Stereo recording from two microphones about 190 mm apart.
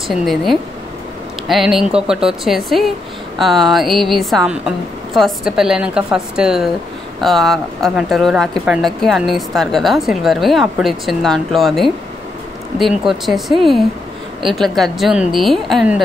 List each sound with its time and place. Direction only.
0.1 s speech: centre (ahead or behind)
13.0 s speech: centre (ahead or behind)